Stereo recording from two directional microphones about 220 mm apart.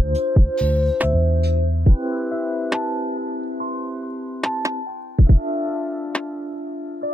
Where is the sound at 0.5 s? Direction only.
5° left (ahead or behind).